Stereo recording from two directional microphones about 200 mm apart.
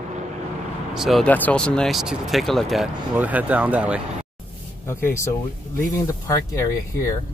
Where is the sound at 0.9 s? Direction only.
Centre (ahead or behind).